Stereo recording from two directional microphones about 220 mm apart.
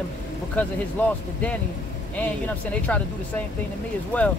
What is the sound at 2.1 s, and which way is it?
Speech, 5° left (ahead or behind).